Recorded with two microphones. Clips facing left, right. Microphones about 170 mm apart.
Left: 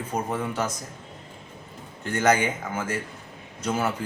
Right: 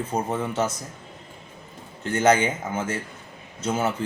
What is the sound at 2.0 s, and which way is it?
Speech, 20° right (ahead or behind).